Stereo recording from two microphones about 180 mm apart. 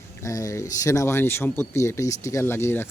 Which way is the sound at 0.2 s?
15° left (ahead or behind).